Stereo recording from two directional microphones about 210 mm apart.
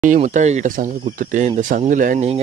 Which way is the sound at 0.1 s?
35° right (ahead or behind).